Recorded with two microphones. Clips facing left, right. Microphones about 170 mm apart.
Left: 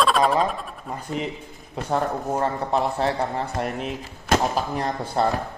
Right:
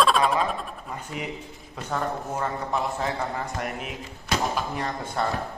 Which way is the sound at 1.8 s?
35° left (ahead or behind).